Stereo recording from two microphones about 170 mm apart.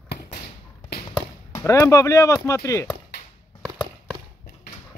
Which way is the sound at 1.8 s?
20° left (ahead or behind).